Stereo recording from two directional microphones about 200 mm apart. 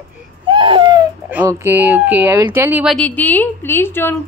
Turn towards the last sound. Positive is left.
turn(degrees=10)  # may be behind; listen again after turning